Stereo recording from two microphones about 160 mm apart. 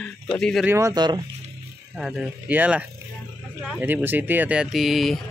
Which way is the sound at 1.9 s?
5° right (ahead or behind).